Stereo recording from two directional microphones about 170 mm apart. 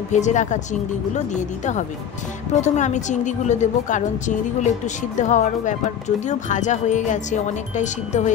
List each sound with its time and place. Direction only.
0.1 s speech: 45° left (ahead or behind)